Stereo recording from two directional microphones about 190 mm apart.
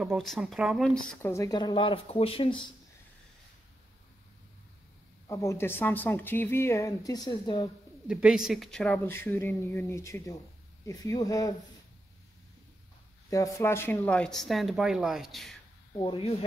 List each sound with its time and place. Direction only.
0.0 s speech: centre (ahead or behind)
1.2 s speech: 15° left (ahead or behind)
5.3 s speech: 15° left (ahead or behind)
8.1 s speech: 5° right (ahead or behind); by 11.5 s 20° left (ahead or behind)
13.3 s speech: 15° left (ahead or behind); by 15.5 s centre (ahead or behind)
16.0 s speech: 30° left (ahead or behind)